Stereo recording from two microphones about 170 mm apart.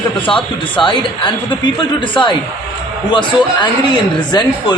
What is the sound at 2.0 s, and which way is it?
Speech, 30° left (ahead or behind).